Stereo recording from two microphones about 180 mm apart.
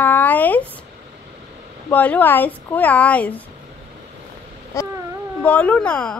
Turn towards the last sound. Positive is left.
turn(degrees=5)  # may be behind; listen again after turning